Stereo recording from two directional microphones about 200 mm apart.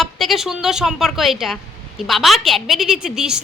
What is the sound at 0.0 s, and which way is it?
A woman's voice, centre (ahead or behind).